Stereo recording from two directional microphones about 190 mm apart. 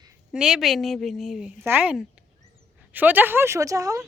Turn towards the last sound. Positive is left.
turn(degrees=-15)  # may be behind; listen again after turning